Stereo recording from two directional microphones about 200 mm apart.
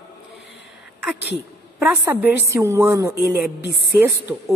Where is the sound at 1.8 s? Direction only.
10° right (ahead or behind).